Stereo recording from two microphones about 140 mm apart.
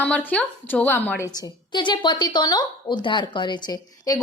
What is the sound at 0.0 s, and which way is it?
A woman's voice, 10° left (ahead or behind).